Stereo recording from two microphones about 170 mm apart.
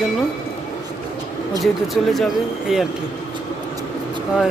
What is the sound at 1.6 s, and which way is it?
Speech, centre (ahead or behind).